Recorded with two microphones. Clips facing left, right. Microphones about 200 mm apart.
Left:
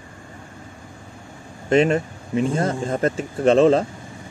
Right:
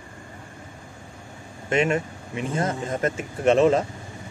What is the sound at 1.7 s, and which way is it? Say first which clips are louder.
Speech: left 5 dB; 35° left (ahead or behind).